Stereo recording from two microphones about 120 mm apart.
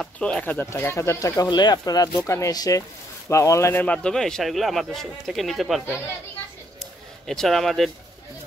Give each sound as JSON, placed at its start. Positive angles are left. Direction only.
{"t": 0.0, "sound": "speech", "side_deg": 10}
{"t": 3.8, "sound": "speech", "side_deg": 10}
{"t": 7.2, "sound": "speech", "side_deg": 0}